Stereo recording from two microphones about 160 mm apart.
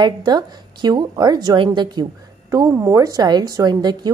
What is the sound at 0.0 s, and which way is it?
A woman's voice, 25° right (ahead or behind).